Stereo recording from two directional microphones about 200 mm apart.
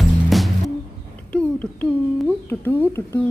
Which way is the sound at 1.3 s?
5° left (ahead or behind).